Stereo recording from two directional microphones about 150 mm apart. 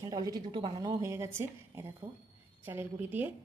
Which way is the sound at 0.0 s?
25° right (ahead or behind).